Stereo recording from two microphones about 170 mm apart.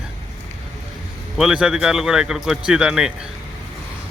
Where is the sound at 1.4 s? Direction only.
5° right (ahead or behind).